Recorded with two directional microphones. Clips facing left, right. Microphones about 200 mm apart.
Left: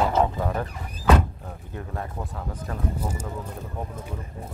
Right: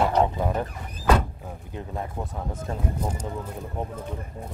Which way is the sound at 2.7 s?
25° right (ahead or behind).